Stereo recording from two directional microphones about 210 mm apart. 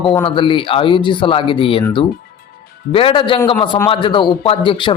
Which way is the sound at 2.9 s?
25° left (ahead or behind).